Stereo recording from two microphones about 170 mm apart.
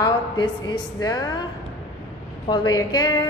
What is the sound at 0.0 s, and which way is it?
A woman's voice, 25° left (ahead or behind).